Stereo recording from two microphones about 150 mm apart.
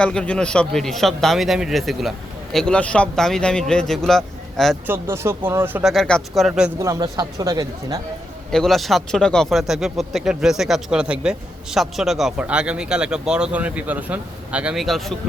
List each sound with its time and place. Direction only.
0.0 s speech: 5° left (ahead or behind)
4.9 s speech: 15° right (ahead or behind)
5.8 s speech: centre (ahead or behind)
6.7 s speech: 20° right (ahead or behind)
8.5 s speech: centre (ahead or behind)